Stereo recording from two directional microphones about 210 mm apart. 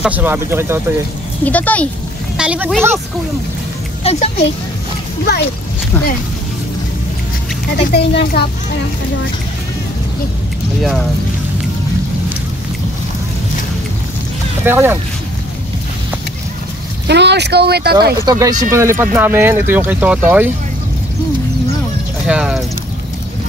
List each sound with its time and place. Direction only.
0.0 s speech: 10° right (ahead or behind)
1.4 s speech: 5° left (ahead or behind)
2.3 s speech: 5° right (ahead or behind)
4.0 s a child's voice: 30° left (ahead or behind)
7.7 s a woman's voice: 50° left (ahead or behind)
14.6 s speech: 10° right (ahead or behind)
17.1 s speech: 55° right (ahead or behind)
18.2 s speech: 15° right (ahead or behind)
22.2 s speech: 5° right (ahead or behind)